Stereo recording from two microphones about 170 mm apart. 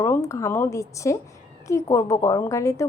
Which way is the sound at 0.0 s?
15° left (ahead or behind).